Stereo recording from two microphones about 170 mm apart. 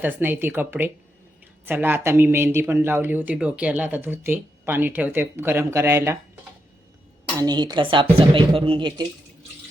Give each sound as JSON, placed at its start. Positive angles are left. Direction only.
{"t": 0.0, "sound": "speech", "side_deg": -10}
{"t": 7.3, "sound": "a woman's voice", "side_deg": -25}